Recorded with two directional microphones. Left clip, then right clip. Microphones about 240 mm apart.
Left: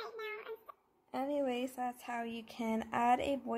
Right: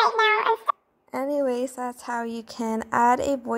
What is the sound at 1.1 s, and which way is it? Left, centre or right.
A woman's voice, right.